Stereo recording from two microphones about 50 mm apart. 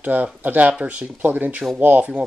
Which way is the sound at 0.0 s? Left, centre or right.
Right.